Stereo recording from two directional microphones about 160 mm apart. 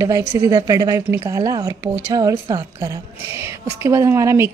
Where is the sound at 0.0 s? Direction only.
20° right (ahead or behind).